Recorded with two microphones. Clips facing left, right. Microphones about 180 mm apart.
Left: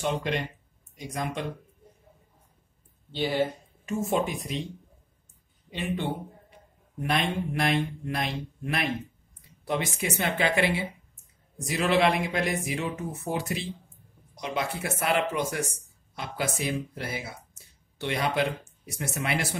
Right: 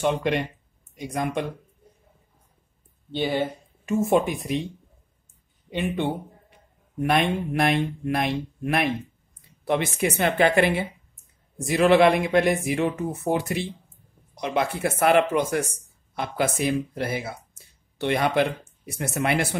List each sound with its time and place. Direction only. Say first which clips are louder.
0.0 s speech: right 5 dB; 60° right (ahead or behind)
3.8 s speech: right 6 dB; 60° right (ahead or behind)
5.7 s speech: right 5 dB; 60° right (ahead or behind)